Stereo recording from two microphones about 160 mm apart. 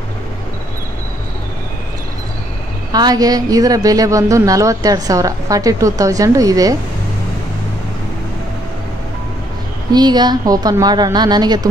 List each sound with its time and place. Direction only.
2.9 s speech: 25° right (ahead or behind)
9.9 s speech: 25° right (ahead or behind)